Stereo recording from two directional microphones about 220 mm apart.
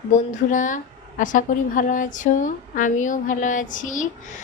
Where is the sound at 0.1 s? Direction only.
35° left (ahead or behind).